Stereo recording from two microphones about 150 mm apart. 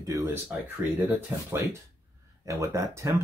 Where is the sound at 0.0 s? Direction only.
20° right (ahead or behind).